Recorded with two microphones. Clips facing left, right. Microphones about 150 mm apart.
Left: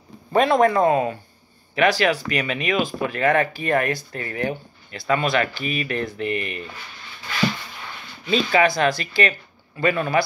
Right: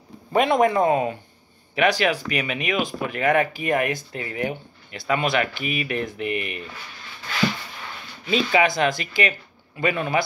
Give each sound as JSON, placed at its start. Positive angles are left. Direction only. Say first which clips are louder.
{"t": 0.3, "sound": "speech", "louder": "left 2 dB", "side_deg": -20}
{"t": 8.3, "sound": "speech", "louder": "left 1 dB", "side_deg": -15}